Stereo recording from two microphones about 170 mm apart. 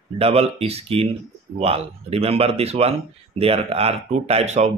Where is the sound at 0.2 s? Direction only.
35° right (ahead or behind).